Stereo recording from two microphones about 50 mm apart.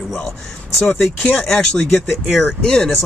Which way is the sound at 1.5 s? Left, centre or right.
Centre.